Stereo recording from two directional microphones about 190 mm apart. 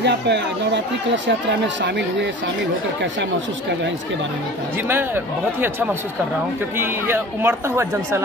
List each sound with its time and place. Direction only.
0.0 s speech: 65° right (ahead or behind)
4.8 s a woman's voice: 10° right (ahead or behind)